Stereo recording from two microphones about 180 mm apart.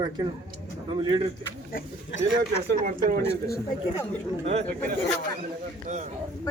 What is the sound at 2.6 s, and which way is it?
Speech, 50° right (ahead or behind).